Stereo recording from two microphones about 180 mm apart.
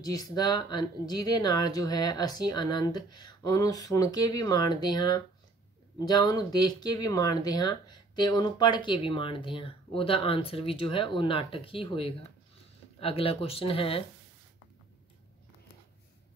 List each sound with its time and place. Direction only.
0.0 s speech: 20° left (ahead or behind)